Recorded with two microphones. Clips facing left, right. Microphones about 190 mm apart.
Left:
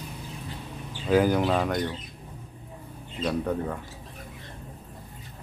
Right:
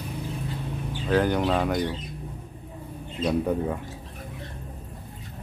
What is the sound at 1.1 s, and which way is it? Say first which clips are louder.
Speech: left 1 dB; 5° left (ahead or behind).